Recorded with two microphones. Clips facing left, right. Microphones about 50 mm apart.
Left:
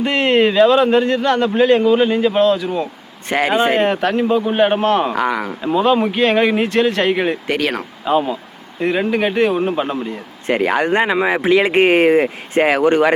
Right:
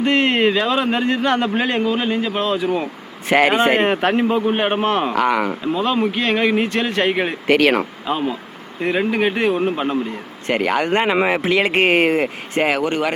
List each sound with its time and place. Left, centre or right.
0.0 s a man's voice: centre
2.6 s speech: right
3.2 s a man's voice: centre
3.8 s speech: centre
5.6 s a man's voice: centre
10.5 s speech: centre
11.0 s speech: centre
11.6 s a man's voice: centre
12.5 s speech: left